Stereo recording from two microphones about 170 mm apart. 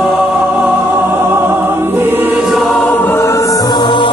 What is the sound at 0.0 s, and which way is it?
Music, 10° right (ahead or behind).